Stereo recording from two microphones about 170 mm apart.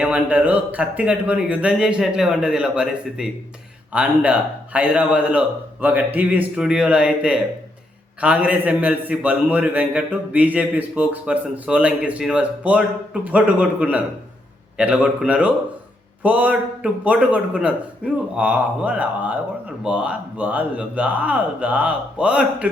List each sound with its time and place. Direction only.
0.0 s a man's voice: 10° right (ahead or behind)